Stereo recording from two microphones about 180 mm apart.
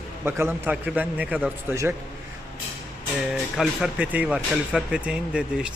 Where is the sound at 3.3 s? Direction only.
Centre (ahead or behind).